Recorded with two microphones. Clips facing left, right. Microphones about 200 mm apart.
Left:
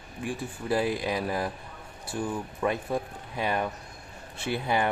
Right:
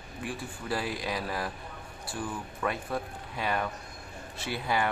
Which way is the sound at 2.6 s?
20° left (ahead or behind).